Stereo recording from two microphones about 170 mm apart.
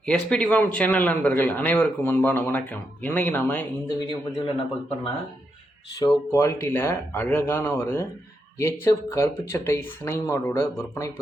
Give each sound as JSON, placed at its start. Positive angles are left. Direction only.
{"t": 0.0, "sound": "speech", "side_deg": 5}
{"t": 3.8, "sound": "a man's voice", "side_deg": 25}
{"t": 6.0, "sound": "speech", "side_deg": 15}